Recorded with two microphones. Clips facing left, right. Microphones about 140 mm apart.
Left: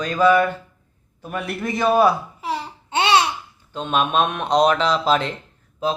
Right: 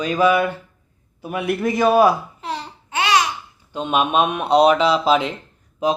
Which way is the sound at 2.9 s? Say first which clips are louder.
Left 1 dB; 25° left (ahead or behind).